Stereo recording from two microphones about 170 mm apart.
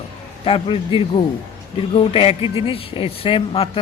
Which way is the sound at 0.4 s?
30° left (ahead or behind).